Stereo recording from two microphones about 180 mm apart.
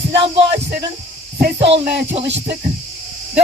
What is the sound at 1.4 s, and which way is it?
Speech, 80° right.